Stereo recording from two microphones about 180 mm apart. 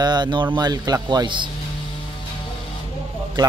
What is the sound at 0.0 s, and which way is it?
Speech, 25° right (ahead or behind).